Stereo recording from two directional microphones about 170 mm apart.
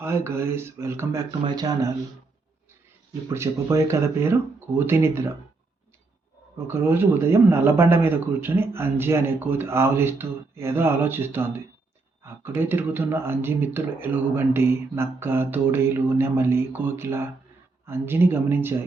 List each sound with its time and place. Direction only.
0.0 s speech: 15° right (ahead or behind)
3.2 s speech: 15° right (ahead or behind)
6.7 s speech: 15° right (ahead or behind)